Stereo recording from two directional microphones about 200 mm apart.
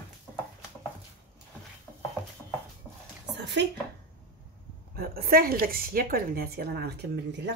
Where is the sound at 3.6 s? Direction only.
60° right (ahead or behind).